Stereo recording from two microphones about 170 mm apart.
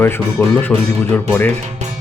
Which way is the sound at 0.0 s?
10° left (ahead or behind).